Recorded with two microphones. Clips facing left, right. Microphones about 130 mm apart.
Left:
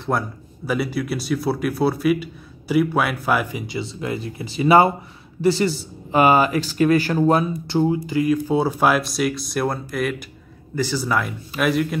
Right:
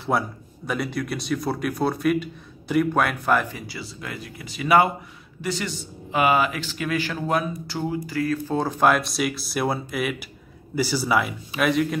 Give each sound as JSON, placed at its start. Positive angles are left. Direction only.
{"t": 0.1, "sound": "speech", "side_deg": 0}
{"t": 3.6, "sound": "speech", "side_deg": 25}